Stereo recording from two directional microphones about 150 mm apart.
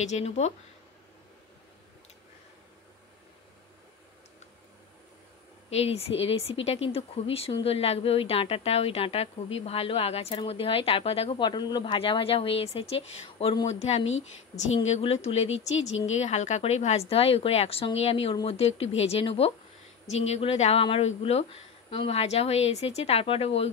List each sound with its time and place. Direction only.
0.0 s a woman's voice: 45° left (ahead or behind)
5.7 s a woman's voice: 45° left (ahead or behind)